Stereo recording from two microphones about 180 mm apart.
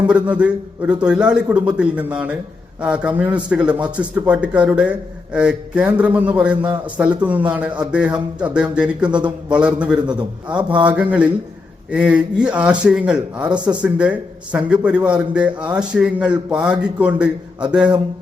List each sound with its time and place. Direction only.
0.1 s a man's voice: 5° right (ahead or behind)
9.0 s a man's voice: 25° right (ahead or behind)
9.5 s a man's voice: 5° right (ahead or behind)